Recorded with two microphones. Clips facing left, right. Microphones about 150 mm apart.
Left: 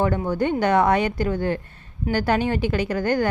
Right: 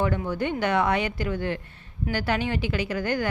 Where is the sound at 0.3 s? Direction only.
45° left (ahead or behind).